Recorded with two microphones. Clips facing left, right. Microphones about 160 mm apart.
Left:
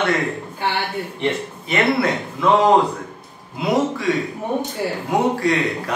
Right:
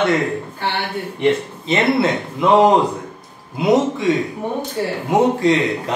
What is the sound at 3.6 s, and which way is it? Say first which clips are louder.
A man's voice: right 4 dB; 20° right (ahead or behind).